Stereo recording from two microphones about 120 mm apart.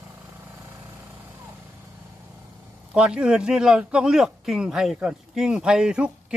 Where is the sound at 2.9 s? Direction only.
5° right (ahead or behind).